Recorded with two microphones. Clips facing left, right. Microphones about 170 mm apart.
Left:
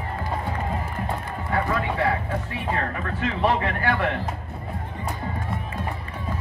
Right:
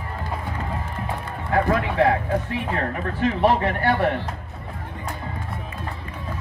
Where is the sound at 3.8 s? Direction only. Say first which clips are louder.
Right 4 dB; 35° right (ahead or behind).